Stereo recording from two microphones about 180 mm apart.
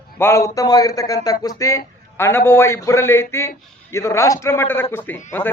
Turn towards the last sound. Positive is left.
turn(degrees=15)  # may be behind; listen again after turning